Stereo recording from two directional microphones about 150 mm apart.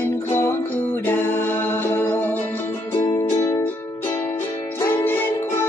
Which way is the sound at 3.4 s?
20° left (ahead or behind).